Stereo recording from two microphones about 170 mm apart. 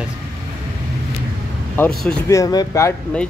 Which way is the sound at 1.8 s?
5° left (ahead or behind).